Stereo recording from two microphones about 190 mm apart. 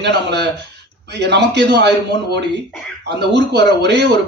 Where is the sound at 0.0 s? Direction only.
60° right (ahead or behind).